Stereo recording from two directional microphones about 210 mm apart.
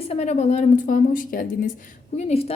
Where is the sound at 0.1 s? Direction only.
30° left (ahead or behind).